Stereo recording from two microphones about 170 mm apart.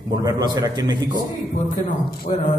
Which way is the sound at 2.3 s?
45° left (ahead or behind).